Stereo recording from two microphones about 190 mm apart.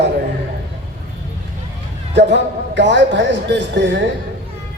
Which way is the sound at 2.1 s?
65° right (ahead or behind).